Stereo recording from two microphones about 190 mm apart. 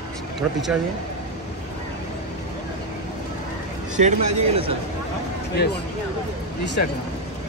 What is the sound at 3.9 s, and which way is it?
Speech, 40° right (ahead or behind).